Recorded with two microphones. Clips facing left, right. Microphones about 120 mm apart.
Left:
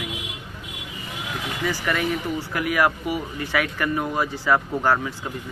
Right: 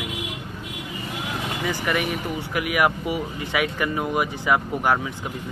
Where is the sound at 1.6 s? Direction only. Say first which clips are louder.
Left 1 dB; 20° right (ahead or behind).